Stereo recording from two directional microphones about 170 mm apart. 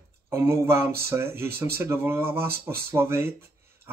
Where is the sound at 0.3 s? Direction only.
15° right (ahead or behind).